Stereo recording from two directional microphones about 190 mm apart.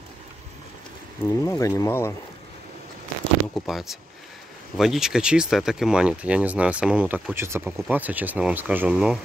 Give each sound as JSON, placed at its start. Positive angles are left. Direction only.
{"t": 1.2, "sound": "speech", "side_deg": 15}
{"t": 3.5, "sound": "speech", "side_deg": 0}